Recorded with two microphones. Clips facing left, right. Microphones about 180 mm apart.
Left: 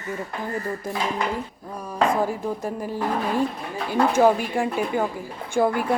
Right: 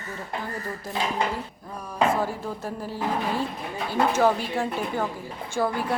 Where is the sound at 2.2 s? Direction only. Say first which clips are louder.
Left 4 dB; 15° left (ahead or behind).